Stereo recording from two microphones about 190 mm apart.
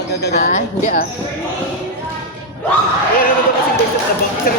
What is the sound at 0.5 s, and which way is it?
Speech, 45° left (ahead or behind).